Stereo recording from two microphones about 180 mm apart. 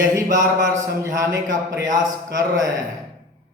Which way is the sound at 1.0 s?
15° right (ahead or behind).